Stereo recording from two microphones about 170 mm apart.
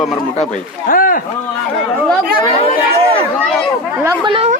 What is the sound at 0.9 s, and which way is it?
Speech, 55° left (ahead or behind).